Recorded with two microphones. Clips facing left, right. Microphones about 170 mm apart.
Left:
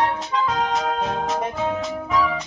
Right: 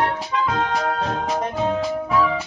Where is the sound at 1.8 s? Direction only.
5° right (ahead or behind).